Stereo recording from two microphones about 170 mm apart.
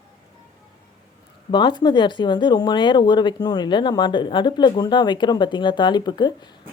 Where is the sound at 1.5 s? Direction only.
25° left (ahead or behind).